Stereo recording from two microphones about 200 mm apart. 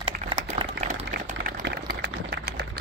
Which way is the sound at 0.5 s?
30° right (ahead or behind).